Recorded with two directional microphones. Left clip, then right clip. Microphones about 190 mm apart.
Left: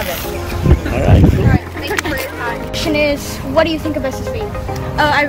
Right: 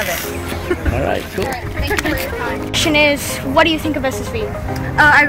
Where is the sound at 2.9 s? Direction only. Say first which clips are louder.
Right 1 dB; 30° right (ahead or behind).